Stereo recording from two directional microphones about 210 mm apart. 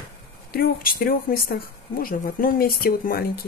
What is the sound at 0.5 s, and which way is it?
Speech, 45° left (ahead or behind).